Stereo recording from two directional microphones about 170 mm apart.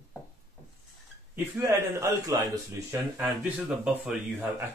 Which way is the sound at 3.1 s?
5° right (ahead or behind).